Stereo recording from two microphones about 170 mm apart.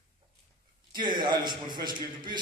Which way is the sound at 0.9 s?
25° right (ahead or behind).